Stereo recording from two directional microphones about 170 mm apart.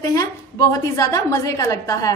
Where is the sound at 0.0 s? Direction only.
20° left (ahead or behind).